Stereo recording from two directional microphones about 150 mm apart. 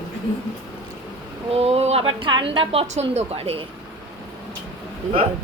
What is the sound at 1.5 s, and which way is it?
A woman's voice, 45° right (ahead or behind).